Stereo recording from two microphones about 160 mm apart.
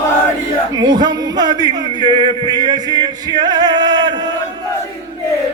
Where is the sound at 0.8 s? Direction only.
25° right (ahead or behind).